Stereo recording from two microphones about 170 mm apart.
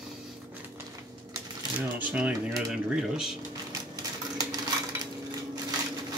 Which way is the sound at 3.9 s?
20° right (ahead or behind).